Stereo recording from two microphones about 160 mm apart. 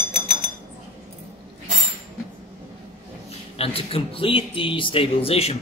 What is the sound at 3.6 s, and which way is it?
Speech, 35° left (ahead or behind).